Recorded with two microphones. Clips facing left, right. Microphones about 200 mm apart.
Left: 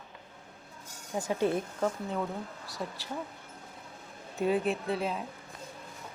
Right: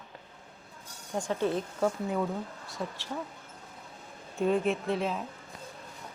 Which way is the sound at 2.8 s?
5° left (ahead or behind).